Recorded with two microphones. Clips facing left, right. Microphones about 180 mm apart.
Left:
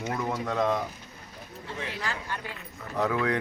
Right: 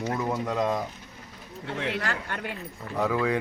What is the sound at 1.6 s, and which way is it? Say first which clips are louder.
Speech: right 5 dB; 65° right (ahead or behind).